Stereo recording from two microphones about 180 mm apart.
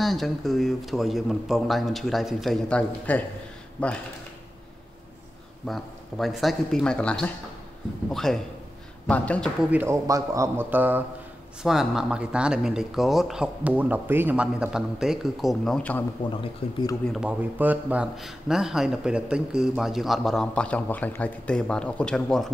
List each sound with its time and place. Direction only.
0.0 s speech: centre (ahead or behind)
5.7 s speech: centre (ahead or behind)
9.6 s speech: 10° right (ahead or behind)
16.6 s speech: 30° left (ahead or behind)
17.1 s speech: 5° right (ahead or behind)